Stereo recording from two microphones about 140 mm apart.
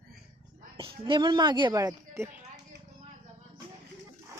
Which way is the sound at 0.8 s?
35° right (ahead or behind).